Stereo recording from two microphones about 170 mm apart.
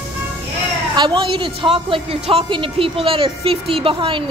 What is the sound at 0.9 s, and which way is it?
A woman's voice, 30° right (ahead or behind).